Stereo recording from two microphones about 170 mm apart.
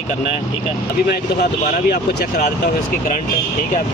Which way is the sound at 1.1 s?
70° left (ahead or behind).